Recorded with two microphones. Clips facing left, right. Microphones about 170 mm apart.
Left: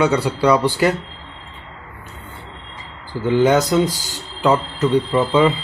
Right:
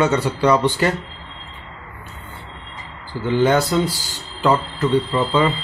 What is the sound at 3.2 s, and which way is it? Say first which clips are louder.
Speech: left 2 dB; 15° left (ahead or behind).